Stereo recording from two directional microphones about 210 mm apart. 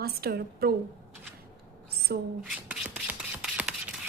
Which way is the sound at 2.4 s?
5° right (ahead or behind).